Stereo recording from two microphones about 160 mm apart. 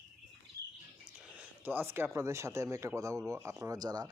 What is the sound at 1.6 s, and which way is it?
Speech, 15° right (ahead or behind).